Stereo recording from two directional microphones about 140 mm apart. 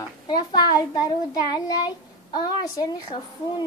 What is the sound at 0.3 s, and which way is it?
A child's voice, 30° left (ahead or behind).